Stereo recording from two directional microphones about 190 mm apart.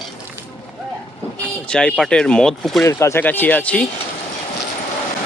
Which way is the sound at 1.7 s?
5° left (ahead or behind).